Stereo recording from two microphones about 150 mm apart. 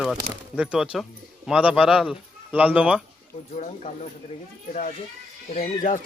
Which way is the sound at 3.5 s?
50° left (ahead or behind).